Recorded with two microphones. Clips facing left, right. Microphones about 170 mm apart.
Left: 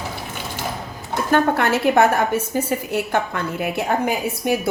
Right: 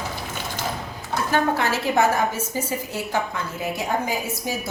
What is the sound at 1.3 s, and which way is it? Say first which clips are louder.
A woman's voice: left 5 dB; 55° left (ahead or behind).